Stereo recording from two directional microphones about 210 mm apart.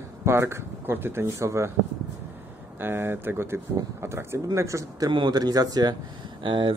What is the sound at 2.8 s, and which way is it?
Speech, 10° right (ahead or behind).